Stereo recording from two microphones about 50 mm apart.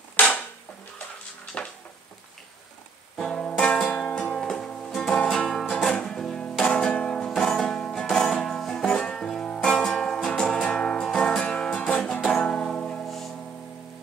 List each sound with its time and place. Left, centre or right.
0.1 s a sound: left
0.9 s music: left
3.2 s music: left
11.3 s music: centre
12.0 s music: centre
12.5 s music: left
13.0 s music: centre